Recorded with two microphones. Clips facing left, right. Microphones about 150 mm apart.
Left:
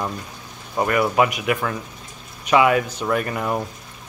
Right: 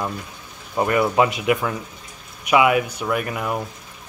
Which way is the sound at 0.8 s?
20° right (ahead or behind).